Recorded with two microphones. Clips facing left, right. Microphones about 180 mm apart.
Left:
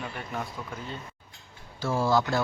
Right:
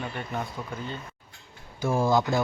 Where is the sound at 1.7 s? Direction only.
15° right (ahead or behind).